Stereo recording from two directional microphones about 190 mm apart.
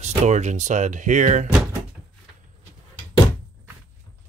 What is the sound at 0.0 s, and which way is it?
Speech, 40° right (ahead or behind).